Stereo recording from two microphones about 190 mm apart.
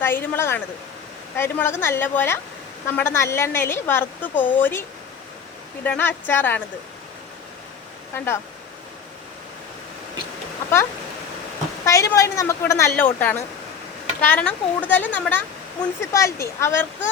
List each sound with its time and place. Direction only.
0.0 s speech: 10° left (ahead or behind)
5.8 s speech: 10° left (ahead or behind)
8.1 s speech: 10° left (ahead or behind)
11.9 s speech: 15° left (ahead or behind)